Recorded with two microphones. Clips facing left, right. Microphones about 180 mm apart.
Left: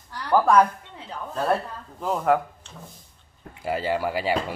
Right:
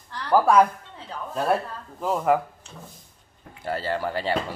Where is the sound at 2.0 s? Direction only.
Centre (ahead or behind).